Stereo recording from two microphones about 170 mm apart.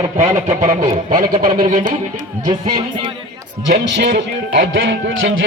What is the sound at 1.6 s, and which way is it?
Speech, 50° right (ahead or behind).